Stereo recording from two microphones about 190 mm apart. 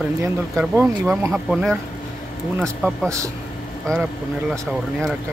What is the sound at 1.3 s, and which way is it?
Speech, centre (ahead or behind).